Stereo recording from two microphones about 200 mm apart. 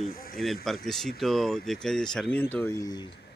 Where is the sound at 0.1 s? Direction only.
45° left (ahead or behind).